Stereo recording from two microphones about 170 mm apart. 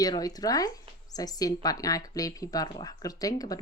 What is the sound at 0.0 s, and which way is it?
Speech, 20° left (ahead or behind).